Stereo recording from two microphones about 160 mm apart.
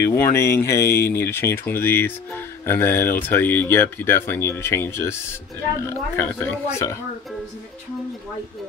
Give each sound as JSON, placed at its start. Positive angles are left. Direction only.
{"t": 0.0, "sound": "speech", "side_deg": 15}
{"t": 6.1, "sound": "speech", "side_deg": 10}